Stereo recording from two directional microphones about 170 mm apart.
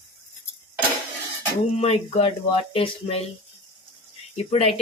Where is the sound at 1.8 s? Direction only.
40° left (ahead or behind).